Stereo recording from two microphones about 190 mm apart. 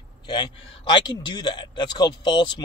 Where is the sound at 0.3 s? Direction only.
25° left (ahead or behind).